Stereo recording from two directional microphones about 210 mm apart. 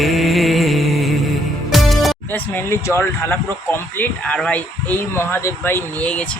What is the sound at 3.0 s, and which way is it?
Speech, 10° left (ahead or behind).